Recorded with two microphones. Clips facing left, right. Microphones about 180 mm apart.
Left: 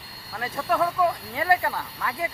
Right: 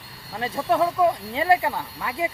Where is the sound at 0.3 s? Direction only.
25° right (ahead or behind).